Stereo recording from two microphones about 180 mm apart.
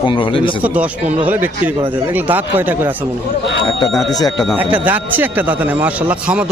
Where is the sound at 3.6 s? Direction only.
30° left (ahead or behind).